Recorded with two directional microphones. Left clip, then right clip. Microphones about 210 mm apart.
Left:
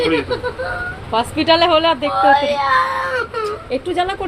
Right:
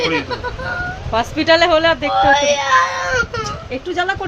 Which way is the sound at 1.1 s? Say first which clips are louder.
Right 1 dB; 15° right (ahead or behind).